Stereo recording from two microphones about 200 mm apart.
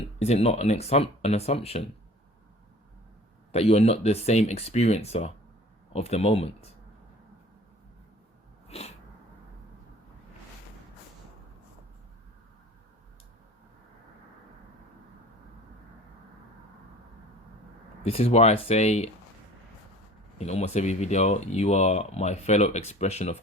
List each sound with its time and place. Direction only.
0.2 s speech: 30° left (ahead or behind)
3.5 s speech: 30° left (ahead or behind)
8.6 s sneeze: 30° left (ahead or behind)
18.0 s speech: 30° left (ahead or behind)
20.4 s speech: 35° left (ahead or behind)